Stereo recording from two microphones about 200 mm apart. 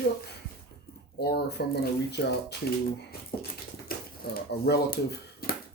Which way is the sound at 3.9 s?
50° left (ahead or behind).